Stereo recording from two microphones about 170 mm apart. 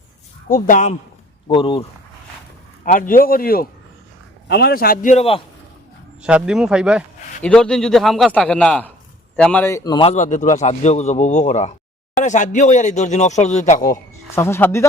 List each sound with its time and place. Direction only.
0.4 s speech: 50° left (ahead or behind)
1.5 s speech: 30° left (ahead or behind)
2.8 s speech: 50° left (ahead or behind)
4.4 s speech: 70° left (ahead or behind)
5.1 s speech: 35° left (ahead or behind)
6.2 s a man's voice: 5° right (ahead or behind); by 10.1 s 25° left (ahead or behind)
10.1 s speech: 45° left (ahead or behind)
14.3 s a man's voice: 15° left (ahead or behind)